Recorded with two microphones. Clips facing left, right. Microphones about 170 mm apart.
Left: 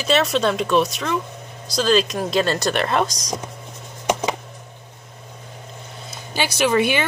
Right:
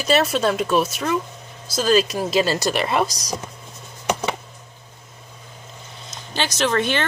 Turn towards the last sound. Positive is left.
turn(degrees=10)  # may be behind; listen again after turning